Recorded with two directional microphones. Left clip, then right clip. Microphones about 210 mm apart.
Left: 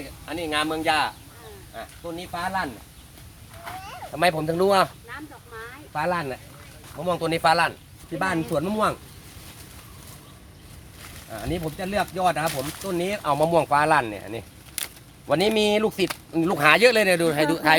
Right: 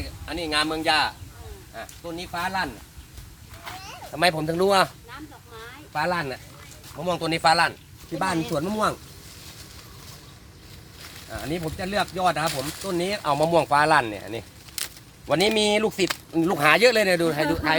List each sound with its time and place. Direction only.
0.0 s speech: 5° left (ahead or behind)
5.0 s a sound: 15° right (ahead or behind)
5.9 s speech: 5° left (ahead or behind)
8.2 s speech: centre (ahead or behind)
11.0 s speech: centre (ahead or behind)
17.6 s a man's voice: 50° left (ahead or behind)